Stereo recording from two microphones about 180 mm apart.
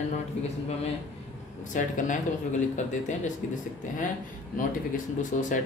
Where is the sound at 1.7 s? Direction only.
45° left (ahead or behind).